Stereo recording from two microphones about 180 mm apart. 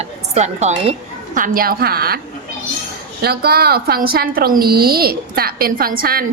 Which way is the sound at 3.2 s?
60° right (ahead or behind).